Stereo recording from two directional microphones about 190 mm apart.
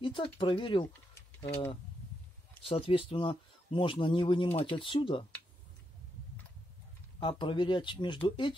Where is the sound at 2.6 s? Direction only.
30° left (ahead or behind).